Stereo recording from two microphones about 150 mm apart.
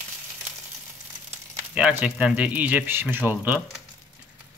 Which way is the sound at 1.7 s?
10° right (ahead or behind).